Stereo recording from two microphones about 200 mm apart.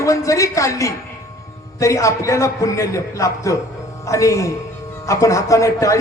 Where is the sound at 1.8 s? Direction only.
15° left (ahead or behind).